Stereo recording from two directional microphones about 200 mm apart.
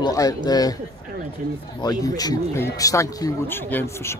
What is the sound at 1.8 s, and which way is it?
Speech, 20° left (ahead or behind).